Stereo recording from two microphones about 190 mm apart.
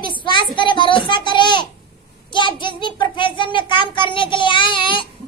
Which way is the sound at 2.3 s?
25° left (ahead or behind).